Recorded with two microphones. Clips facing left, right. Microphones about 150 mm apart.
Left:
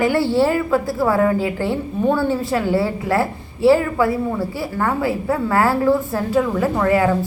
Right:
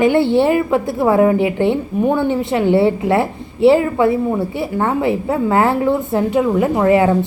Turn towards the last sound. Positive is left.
turn(degrees=-20)  # may be behind; listen again after turning